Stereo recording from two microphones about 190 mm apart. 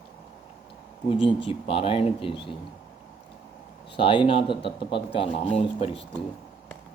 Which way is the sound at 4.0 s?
25° left (ahead or behind).